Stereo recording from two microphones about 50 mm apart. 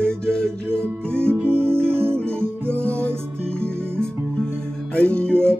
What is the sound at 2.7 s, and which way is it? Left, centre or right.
Music, left.